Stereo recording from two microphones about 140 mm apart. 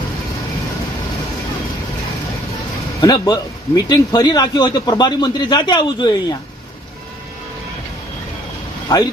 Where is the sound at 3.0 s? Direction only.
30° left (ahead or behind).